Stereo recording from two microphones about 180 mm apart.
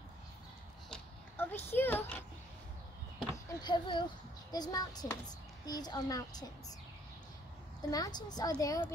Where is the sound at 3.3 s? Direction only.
20° left (ahead or behind).